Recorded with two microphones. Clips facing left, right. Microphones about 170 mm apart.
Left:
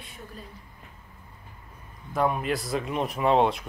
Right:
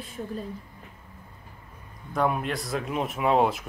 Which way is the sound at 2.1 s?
Centre (ahead or behind).